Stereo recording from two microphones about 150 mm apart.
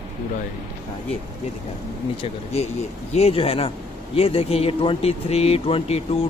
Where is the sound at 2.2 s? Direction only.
45° left (ahead or behind).